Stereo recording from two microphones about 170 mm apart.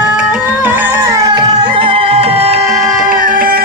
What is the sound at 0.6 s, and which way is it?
Music, 10° right (ahead or behind).